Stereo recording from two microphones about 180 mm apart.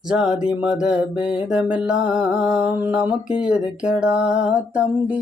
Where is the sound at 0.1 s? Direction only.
5° right (ahead or behind).